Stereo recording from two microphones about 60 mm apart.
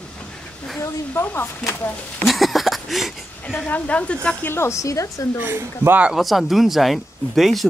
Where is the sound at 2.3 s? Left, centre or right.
Centre.